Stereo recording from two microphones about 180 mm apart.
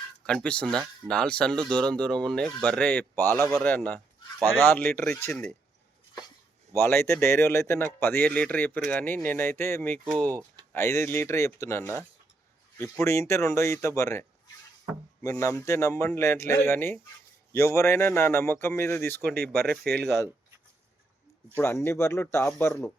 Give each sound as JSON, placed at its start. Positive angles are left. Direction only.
{"t": 0.3, "sound": "a man's voice", "side_deg": 5}
{"t": 6.7, "sound": "speech", "side_deg": 15}
{"t": 19.2, "sound": "speech", "side_deg": -60}
{"t": 21.5, "sound": "speech", "side_deg": 15}